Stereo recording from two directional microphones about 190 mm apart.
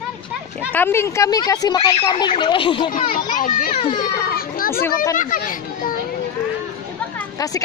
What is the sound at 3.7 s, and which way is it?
Speech, 30° left (ahead or behind).